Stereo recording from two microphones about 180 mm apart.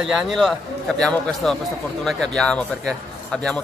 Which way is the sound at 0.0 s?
Centre (ahead or behind).